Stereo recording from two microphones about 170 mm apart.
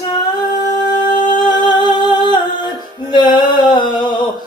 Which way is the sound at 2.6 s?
25° left (ahead or behind).